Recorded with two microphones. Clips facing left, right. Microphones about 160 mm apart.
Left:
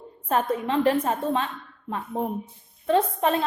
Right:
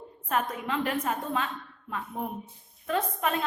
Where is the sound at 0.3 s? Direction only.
30° left (ahead or behind).